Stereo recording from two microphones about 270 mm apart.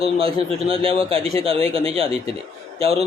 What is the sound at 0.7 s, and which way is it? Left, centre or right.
Speech, centre.